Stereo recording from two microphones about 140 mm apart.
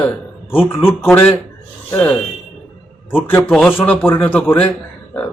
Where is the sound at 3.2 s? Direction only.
15° left (ahead or behind).